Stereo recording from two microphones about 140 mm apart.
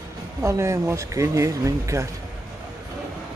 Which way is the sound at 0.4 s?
20° right (ahead or behind).